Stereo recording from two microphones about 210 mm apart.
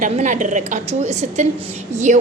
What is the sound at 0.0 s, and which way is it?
A woman's voice, 35° right (ahead or behind).